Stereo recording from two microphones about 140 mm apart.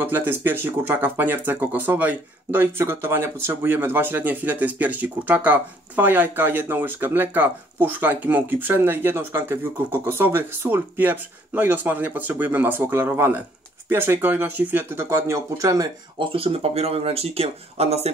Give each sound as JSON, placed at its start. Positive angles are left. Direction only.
{"t": 0.0, "sound": "speech", "side_deg": -15}
{"t": 16.2, "sound": "speech", "side_deg": -40}